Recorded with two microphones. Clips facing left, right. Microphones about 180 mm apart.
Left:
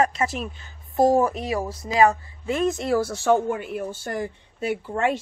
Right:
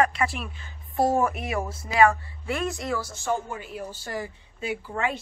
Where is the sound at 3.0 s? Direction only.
70° left (ahead or behind).